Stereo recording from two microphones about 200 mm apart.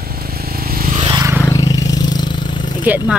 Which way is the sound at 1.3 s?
15° left (ahead or behind).